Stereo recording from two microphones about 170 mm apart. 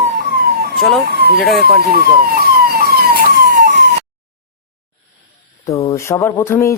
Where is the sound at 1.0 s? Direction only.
65° right (ahead or behind).